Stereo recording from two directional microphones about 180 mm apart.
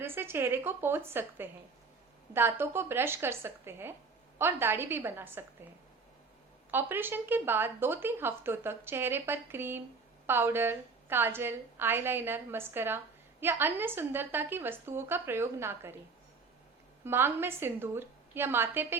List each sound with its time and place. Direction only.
0.0 s a woman's voice: 15° right (ahead or behind)
6.7 s a woman's voice: 10° right (ahead or behind)
17.0 s a woman's voice: 10° right (ahead or behind)